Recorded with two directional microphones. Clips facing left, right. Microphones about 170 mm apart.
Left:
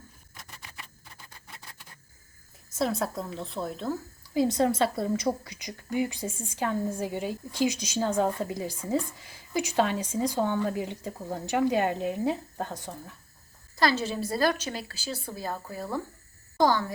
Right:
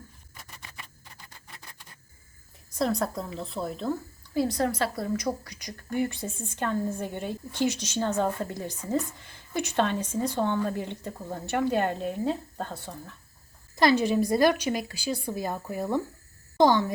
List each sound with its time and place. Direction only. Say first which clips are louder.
2.7 s a woman's voice: right 1 dB; centre (ahead or behind)
4.4 s a woman's voice: left 2 dB; 25° left (ahead or behind)
13.7 s a woman's voice: right 5 dB; 15° right (ahead or behind)